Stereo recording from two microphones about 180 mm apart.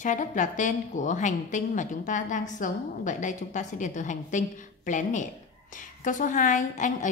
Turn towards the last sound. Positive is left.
turn(degrees=45)  # may be behind; listen again after turning